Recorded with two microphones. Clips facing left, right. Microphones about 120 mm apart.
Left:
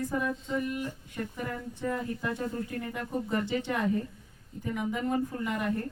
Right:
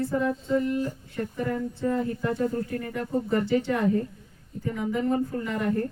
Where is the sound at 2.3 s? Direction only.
20° left (ahead or behind).